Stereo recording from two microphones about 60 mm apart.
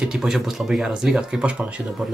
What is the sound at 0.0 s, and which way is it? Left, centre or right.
Speech, centre.